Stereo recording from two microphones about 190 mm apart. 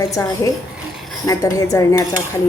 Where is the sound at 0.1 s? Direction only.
15° left (ahead or behind).